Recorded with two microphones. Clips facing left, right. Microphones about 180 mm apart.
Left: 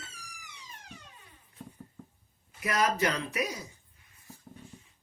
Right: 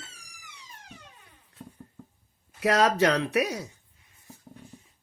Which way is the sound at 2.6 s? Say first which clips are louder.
Right 6 dB; 80° right.